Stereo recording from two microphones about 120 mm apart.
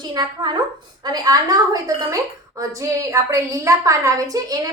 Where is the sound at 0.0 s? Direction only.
35° right (ahead or behind).